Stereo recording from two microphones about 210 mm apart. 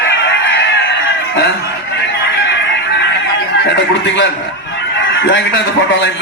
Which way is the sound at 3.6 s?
55° left (ahead or behind).